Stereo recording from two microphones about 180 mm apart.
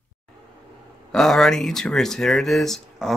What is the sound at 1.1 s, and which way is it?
Speech, centre (ahead or behind).